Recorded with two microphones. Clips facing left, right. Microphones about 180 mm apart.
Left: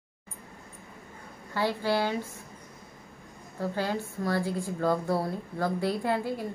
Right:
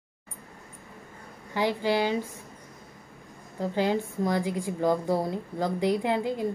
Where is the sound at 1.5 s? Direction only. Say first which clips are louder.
Right 2 dB; 15° right (ahead or behind).